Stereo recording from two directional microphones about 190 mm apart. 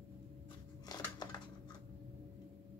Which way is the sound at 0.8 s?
20° left (ahead or behind).